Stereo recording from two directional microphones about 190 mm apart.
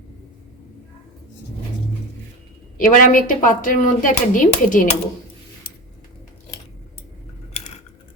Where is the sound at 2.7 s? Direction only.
45° left (ahead or behind).